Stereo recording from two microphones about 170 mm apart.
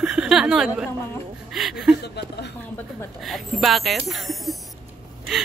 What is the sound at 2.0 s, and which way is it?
Speech, 75° left (ahead or behind).